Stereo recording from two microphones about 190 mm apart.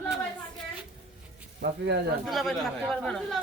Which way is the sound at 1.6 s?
65° right (ahead or behind).